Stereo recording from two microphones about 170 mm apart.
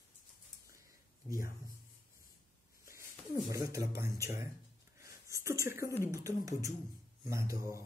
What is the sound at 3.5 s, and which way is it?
Speech, 20° right (ahead or behind).